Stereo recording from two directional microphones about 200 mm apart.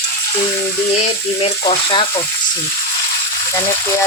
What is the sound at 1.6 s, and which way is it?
Speech, 25° left (ahead or behind).